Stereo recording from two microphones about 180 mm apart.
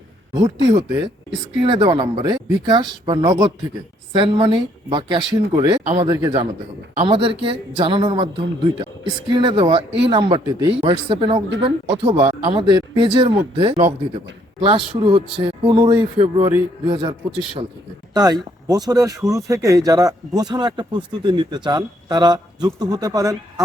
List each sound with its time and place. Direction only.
0.7 s speech: 25° right (ahead or behind)